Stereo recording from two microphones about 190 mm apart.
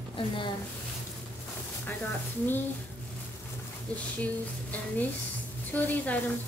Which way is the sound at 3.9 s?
5° left (ahead or behind).